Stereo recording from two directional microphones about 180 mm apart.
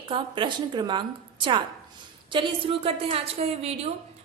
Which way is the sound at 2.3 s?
30° right (ahead or behind).